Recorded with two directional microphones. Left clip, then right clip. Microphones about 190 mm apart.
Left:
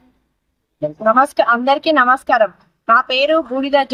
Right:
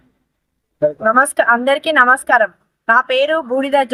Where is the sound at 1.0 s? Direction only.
25° right (ahead or behind).